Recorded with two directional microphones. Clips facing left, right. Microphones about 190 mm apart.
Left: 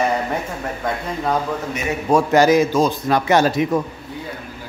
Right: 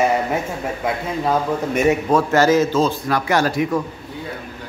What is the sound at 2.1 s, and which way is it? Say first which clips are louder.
A man's voice: left 4 dB; 15° left (ahead or behind).